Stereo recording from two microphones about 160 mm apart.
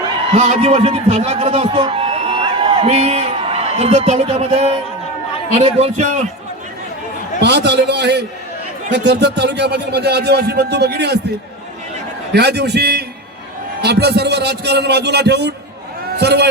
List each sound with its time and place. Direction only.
0.3 s a man's voice: 45° right (ahead or behind)
7.4 s speech: 90° right
12.3 s speech: 90° right
16.1 s a sound: 90° right